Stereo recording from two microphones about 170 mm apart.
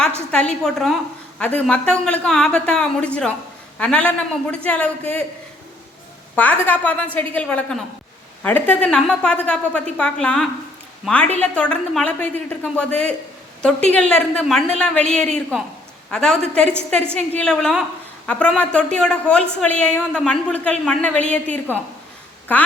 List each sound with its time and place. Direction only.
0.3 s a woman's voice: 5° left (ahead or behind)
6.3 s a woman's voice: 10° left (ahead or behind)